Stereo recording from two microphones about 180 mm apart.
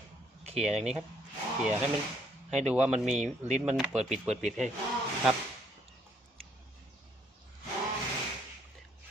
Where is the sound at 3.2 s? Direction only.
40° right (ahead or behind).